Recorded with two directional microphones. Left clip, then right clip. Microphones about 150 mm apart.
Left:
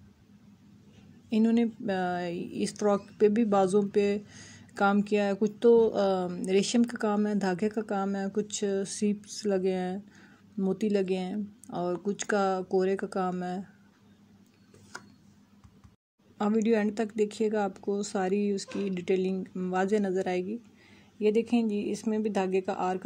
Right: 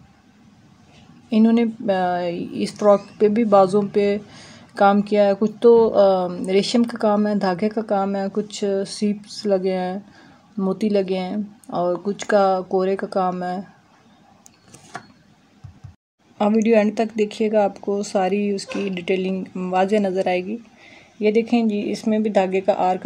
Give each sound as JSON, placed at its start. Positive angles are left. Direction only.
{"t": 1.3, "sound": "speech", "side_deg": 25}
{"t": 16.3, "sound": "speech", "side_deg": 25}